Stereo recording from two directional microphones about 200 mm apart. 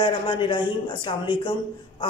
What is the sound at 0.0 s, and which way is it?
A woman's voice, 25° left (ahead or behind).